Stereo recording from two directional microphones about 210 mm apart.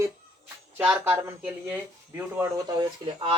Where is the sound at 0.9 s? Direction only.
10° right (ahead or behind).